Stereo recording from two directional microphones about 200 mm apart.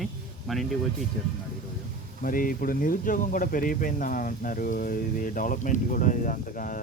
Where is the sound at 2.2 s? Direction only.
45° left (ahead or behind).